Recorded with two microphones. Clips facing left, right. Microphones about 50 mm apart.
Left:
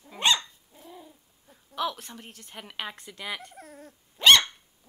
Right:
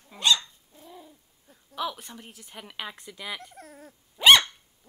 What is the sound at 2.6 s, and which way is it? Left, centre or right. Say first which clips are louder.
A woman's voice: left 1 dB; centre.